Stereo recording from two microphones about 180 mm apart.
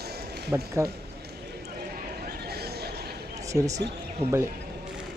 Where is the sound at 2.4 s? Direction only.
60° right (ahead or behind).